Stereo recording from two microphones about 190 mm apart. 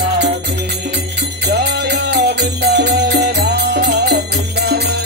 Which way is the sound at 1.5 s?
60° right (ahead or behind).